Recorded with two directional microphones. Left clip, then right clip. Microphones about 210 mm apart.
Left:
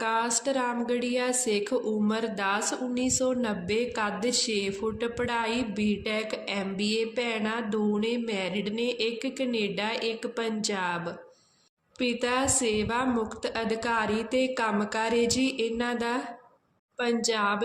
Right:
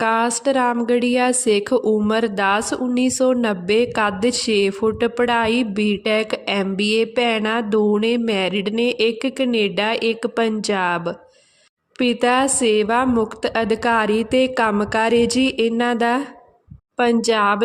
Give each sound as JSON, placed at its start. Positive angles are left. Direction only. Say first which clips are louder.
{"t": 0.0, "sound": "a woman's voice", "louder": "right 9 dB", "side_deg": -45}